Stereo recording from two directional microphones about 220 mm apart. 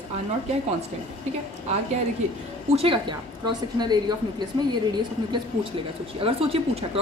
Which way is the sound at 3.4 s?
20° right (ahead or behind).